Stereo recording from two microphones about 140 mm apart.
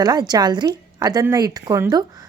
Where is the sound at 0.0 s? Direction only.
30° right (ahead or behind).